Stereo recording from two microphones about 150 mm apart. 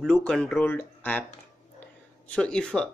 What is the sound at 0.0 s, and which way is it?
Speech, 5° left (ahead or behind).